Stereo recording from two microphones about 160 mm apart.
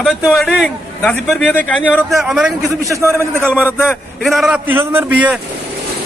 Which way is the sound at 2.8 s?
20° right (ahead or behind).